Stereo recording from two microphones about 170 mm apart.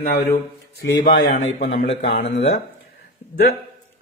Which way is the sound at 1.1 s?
50° left (ahead or behind).